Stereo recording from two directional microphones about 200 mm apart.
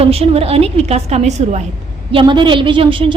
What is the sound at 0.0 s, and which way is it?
A woman's voice, 30° right (ahead or behind).